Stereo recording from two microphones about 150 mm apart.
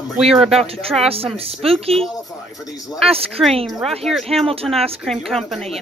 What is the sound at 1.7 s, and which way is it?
Speech, 40° right (ahead or behind).